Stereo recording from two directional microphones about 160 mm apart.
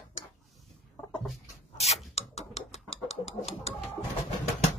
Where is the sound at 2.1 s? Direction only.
45° left (ahead or behind).